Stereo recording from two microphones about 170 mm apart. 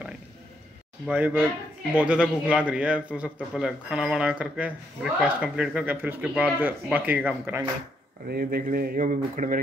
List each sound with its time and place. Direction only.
1.0 s a man's voice: 10° right (ahead or behind)
8.3 s speech: 60° right (ahead or behind)